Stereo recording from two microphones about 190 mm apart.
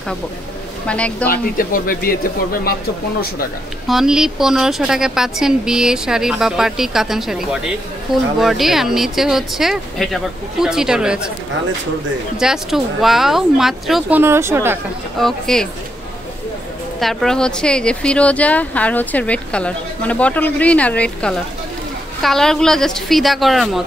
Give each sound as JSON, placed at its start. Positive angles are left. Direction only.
{"t": 0.8, "sound": "a woman's voice", "side_deg": 5}
{"t": 1.2, "sound": "speech", "side_deg": 50}
{"t": 3.8, "sound": "a woman's voice", "side_deg": 0}
{"t": 12.4, "sound": "a woman's voice", "side_deg": 0}
{"t": 14.2, "sound": "speech", "side_deg": -15}
{"t": 15.1, "sound": "a woman's voice", "side_deg": 0}
{"t": 17.0, "sound": "a woman's voice", "side_deg": 0}